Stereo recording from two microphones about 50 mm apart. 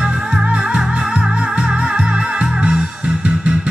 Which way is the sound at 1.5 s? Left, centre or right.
Centre.